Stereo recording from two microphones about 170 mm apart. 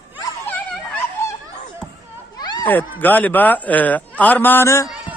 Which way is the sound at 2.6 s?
10° left (ahead or behind).